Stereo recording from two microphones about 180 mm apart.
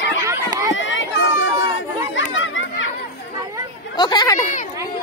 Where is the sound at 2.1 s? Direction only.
90° left.